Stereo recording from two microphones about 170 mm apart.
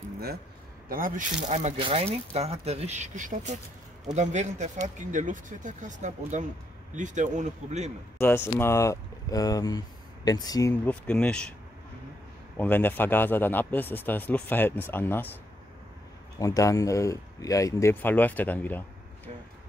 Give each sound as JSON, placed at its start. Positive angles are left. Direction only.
{"t": 0.8, "sound": "speech", "side_deg": -55}
{"t": 1.8, "sound": "speech", "side_deg": -30}
{"t": 8.2, "sound": "speech", "side_deg": 15}
{"t": 10.9, "sound": "speech", "side_deg": 5}
{"t": 12.5, "sound": "speech", "side_deg": 10}
{"t": 16.3, "sound": "speech", "side_deg": 20}